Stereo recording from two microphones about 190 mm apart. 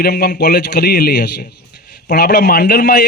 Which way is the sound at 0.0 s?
55° left (ahead or behind).